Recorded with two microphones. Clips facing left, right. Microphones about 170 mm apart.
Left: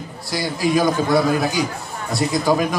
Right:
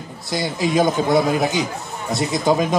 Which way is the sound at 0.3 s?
20° right (ahead or behind).